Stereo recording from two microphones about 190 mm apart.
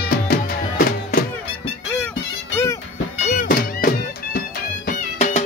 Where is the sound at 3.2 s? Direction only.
50° left (ahead or behind).